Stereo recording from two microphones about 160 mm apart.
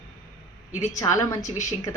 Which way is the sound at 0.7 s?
45° left (ahead or behind).